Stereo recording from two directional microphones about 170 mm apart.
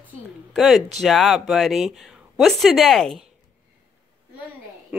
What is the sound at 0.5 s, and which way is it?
Speech, centre (ahead or behind).